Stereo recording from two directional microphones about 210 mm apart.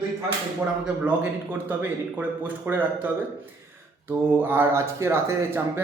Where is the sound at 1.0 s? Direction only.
10° right (ahead or behind).